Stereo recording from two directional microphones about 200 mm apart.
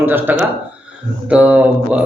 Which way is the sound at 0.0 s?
10° right (ahead or behind).